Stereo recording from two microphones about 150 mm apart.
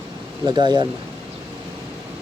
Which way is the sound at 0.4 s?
30° right (ahead or behind).